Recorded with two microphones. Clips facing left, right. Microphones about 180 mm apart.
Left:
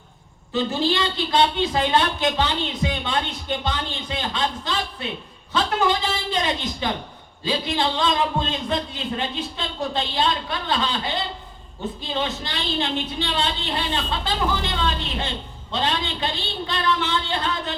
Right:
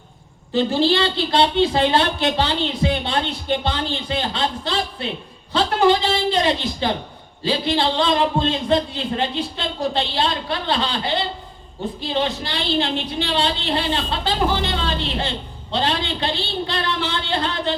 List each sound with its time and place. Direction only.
0.5 s a woman's voice: 30° right (ahead or behind)
12.1 s a woman's voice: 35° right (ahead or behind)